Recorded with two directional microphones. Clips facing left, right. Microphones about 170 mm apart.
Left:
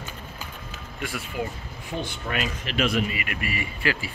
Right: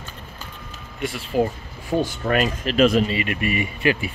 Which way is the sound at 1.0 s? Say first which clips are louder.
Right 9 dB; 30° right (ahead or behind).